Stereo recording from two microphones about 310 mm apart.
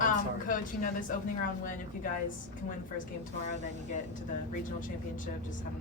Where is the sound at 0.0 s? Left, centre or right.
Left.